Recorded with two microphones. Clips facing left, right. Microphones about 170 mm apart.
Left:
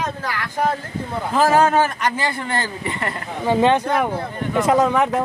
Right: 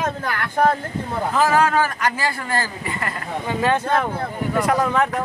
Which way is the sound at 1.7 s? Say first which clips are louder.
Left 2 dB; 25° left (ahead or behind).